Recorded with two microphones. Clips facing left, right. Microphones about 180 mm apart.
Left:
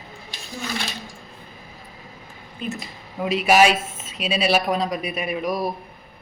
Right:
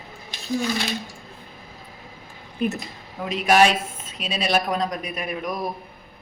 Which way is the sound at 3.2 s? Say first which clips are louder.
Left 1 dB; 5° left (ahead or behind).